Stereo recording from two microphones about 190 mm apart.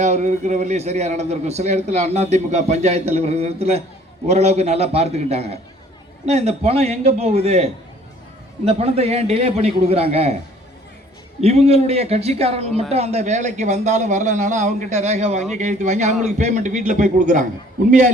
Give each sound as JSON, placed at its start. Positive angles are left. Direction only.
{"t": 0.0, "sound": "a man's voice", "side_deg": -40}
{"t": 11.3, "sound": "a man's voice", "side_deg": -35}